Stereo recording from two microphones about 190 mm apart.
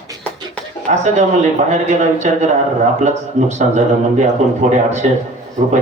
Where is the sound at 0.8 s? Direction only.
40° right (ahead or behind).